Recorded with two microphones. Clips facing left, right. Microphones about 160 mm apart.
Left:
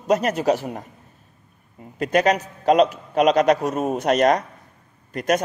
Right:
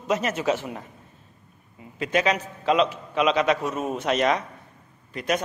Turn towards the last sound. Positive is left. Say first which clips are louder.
# left 5 dB
turn(degrees=45)  # may be behind; listen again after turning